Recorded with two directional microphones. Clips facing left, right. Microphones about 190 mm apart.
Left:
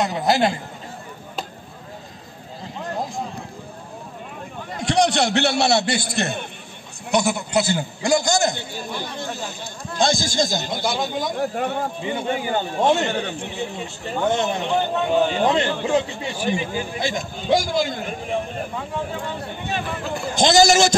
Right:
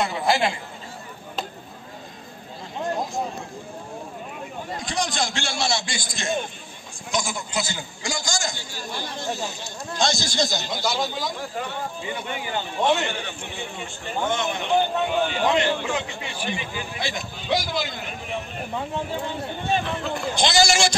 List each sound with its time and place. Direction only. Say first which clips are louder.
0.0 s a man's voice: left 3 dB; 40° left (ahead or behind)
4.8 s a man's voice: left 10 dB; 70° left (ahead or behind); by 11.8 s 55° left (ahead or behind)
12.0 s a man's voice: left 6 dB; 25° left (ahead or behind)
20.3 s speech: left 7 dB; 45° left (ahead or behind)